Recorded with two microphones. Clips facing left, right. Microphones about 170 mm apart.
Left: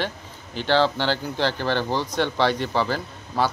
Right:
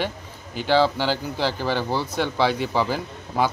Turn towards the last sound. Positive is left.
turn(degrees=-10)  # may be behind; listen again after turning